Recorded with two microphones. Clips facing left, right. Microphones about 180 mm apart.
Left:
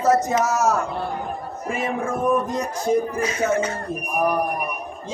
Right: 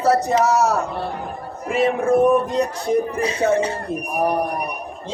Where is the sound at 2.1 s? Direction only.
65° right (ahead or behind).